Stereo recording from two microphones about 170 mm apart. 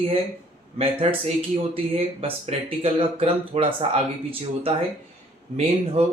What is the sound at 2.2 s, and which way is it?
Speech, 35° right (ahead or behind).